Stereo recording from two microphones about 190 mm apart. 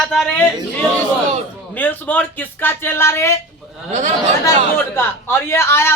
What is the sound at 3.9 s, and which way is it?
Speech, 40° right (ahead or behind).